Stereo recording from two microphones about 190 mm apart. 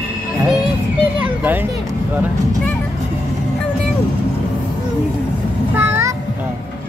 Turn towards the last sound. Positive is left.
turn(degrees=-10)  # may be behind; listen again after turning